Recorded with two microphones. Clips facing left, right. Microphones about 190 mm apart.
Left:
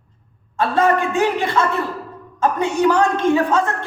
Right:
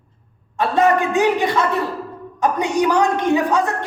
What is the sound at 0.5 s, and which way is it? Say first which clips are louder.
A man's voice: right 1 dB; 20° right (ahead or behind).